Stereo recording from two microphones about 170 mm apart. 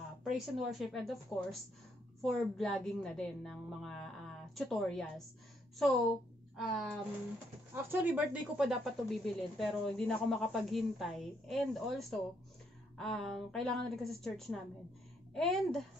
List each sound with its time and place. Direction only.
0.2 s speech: centre (ahead or behind)
7.7 s speech: 10° right (ahead or behind)